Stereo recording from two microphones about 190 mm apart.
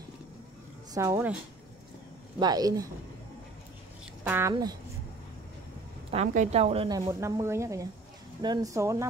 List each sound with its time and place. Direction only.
0.9 s speech: 15° right (ahead or behind)
2.4 s speech: 20° right (ahead or behind)
4.2 s speech: 10° right (ahead or behind)
6.2 s a woman's voice: 40° right (ahead or behind)
6.9 s speech: 15° right (ahead or behind)